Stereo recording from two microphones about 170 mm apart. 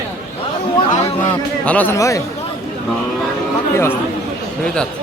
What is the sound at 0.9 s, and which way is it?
Speech, 40° left (ahead or behind).